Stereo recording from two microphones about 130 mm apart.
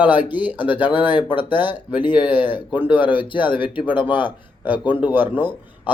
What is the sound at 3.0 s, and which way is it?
Speech, 40° left (ahead or behind).